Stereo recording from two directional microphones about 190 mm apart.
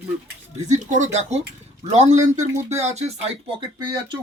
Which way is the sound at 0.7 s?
40° right (ahead or behind).